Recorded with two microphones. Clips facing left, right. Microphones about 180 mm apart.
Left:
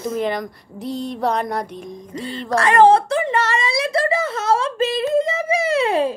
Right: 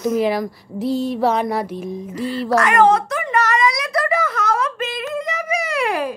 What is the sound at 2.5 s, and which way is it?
A woman's voice, 30° left (ahead or behind).